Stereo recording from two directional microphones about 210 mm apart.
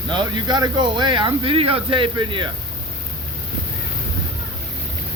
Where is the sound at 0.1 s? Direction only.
20° right (ahead or behind).